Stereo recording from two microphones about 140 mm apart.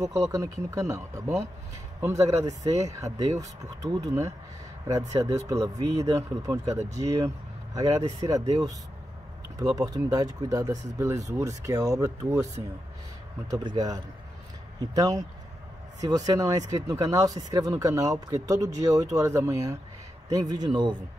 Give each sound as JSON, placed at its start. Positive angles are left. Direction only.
{"t": 0.0, "sound": "speech", "side_deg": -25}
{"t": 13.5, "sound": "speech", "side_deg": -25}